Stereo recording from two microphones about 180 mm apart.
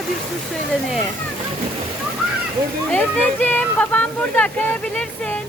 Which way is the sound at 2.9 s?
10° left (ahead or behind).